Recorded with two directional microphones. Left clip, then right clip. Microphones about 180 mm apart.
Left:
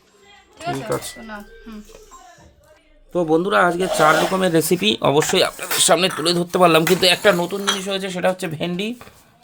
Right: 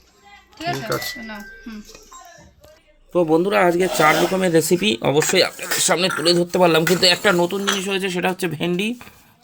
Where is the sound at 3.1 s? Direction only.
10° left (ahead or behind).